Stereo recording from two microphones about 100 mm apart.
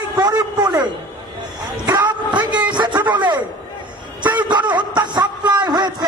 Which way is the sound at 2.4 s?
50° right (ahead or behind).